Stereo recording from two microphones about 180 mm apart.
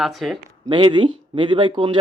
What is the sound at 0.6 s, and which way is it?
Speech, 25° right (ahead or behind).